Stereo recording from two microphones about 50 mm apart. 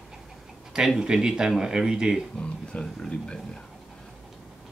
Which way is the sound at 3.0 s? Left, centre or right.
Centre.